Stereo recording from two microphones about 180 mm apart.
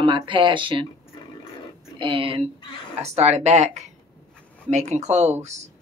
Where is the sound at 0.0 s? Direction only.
25° right (ahead or behind).